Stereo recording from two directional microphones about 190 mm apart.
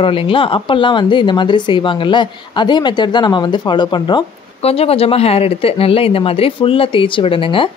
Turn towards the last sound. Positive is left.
turn(degrees=25)  # may be behind; listen again after turning